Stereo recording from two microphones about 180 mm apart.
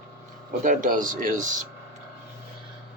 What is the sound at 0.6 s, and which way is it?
Speech, 45° right (ahead or behind).